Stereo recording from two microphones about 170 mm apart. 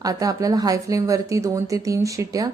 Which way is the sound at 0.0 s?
20° right (ahead or behind).